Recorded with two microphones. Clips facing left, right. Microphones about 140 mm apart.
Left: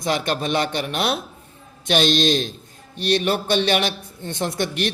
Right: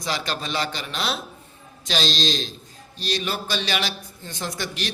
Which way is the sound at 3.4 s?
60° left (ahead or behind).